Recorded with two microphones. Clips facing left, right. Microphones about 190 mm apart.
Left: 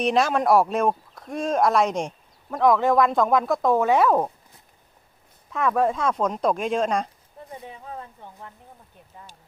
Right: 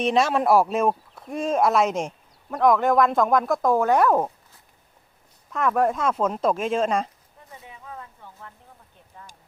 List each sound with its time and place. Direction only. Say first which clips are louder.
0.0 s speech: even; centre (ahead or behind)
5.5 s speech: even; centre (ahead or behind)
7.5 s a sound: left 4 dB; 35° left (ahead or behind)